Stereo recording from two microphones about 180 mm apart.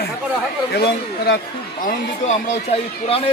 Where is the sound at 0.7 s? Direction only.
60° left (ahead or behind).